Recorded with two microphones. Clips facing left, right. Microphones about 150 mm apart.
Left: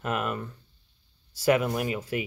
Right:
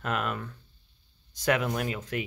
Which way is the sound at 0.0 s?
5° left (ahead or behind).